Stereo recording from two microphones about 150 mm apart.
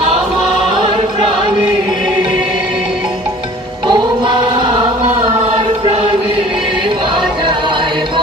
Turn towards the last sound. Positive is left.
turn(degrees=-30)  # may be behind; listen again after turning